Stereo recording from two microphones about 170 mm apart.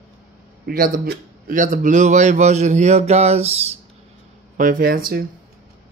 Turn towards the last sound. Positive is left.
turn(degrees=-60)  # may be behind; listen again after turning